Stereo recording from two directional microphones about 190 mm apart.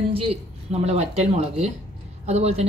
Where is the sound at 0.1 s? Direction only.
30° right (ahead or behind).